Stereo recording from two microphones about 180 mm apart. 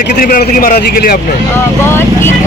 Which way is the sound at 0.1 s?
50° left (ahead or behind).